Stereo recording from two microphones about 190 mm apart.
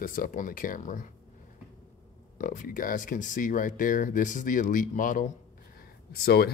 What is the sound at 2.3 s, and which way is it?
Speech, 40° left (ahead or behind).